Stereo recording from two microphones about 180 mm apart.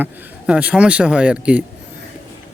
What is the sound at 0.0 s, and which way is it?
A man's voice, 5° right (ahead or behind).